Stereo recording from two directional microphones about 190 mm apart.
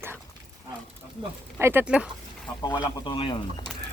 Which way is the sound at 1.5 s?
10° right (ahead or behind).